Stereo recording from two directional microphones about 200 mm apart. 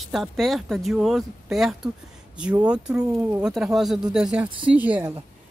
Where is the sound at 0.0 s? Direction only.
Centre (ahead or behind).